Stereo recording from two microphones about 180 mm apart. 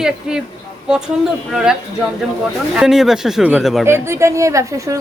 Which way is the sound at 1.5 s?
5° right (ahead or behind).